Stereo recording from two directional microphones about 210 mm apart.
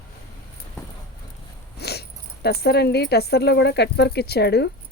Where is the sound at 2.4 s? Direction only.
50° left (ahead or behind).